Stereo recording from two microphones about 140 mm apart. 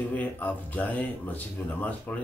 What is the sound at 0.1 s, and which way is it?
Speech, 10° left (ahead or behind).